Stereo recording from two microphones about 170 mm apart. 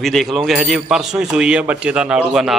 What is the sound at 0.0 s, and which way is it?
A man's voice, centre (ahead or behind).